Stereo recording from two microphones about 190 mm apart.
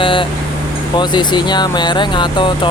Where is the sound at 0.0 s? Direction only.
25° left (ahead or behind).